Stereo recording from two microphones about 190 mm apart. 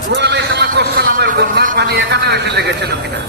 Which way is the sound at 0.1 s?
60° right (ahead or behind).